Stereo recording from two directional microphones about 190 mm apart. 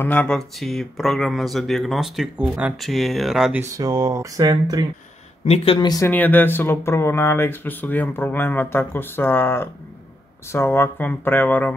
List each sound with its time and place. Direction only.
0.0 s speech: 10° left (ahead or behind)
3.7 s speech: 20° right (ahead or behind)
5.4 s speech: 30° left (ahead or behind); by 11.7 s 10° left (ahead or behind)